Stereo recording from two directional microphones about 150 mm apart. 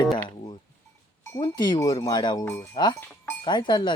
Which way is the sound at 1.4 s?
30° left (ahead or behind).